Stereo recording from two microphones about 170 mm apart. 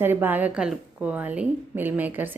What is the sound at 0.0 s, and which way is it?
Speech, 10° right (ahead or behind).